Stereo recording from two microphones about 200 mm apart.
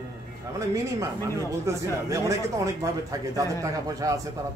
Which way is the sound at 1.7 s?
15° right (ahead or behind).